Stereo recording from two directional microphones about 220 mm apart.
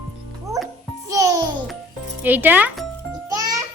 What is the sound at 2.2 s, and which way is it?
Speech, 10° right (ahead or behind).